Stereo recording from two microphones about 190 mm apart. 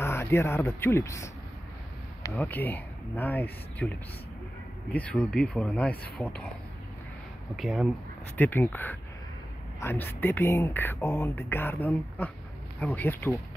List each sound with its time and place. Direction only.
0.0 s speech: 10° left (ahead or behind)
4.9 s speech: 5° left (ahead or behind)
7.5 s speech: centre (ahead or behind)
8.4 s speech: 10° left (ahead or behind)